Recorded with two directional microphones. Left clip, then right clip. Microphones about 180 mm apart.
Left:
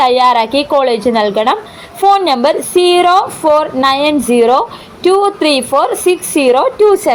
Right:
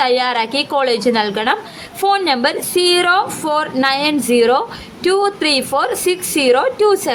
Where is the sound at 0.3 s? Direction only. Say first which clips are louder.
Left 6 dB; 10° left (ahead or behind).